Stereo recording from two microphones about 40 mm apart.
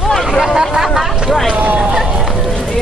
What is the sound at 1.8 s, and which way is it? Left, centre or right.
Run, centre.